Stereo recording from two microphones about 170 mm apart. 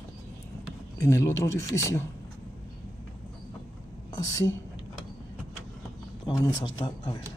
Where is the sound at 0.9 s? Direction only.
15° left (ahead or behind).